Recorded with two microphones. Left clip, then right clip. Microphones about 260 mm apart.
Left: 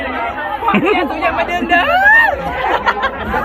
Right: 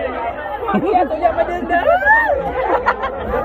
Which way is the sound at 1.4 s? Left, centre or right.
Centre.